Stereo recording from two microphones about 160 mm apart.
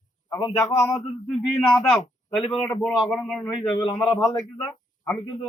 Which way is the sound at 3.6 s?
25° left (ahead or behind).